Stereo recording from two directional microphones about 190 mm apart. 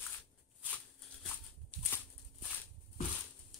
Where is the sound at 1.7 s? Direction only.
5° left (ahead or behind).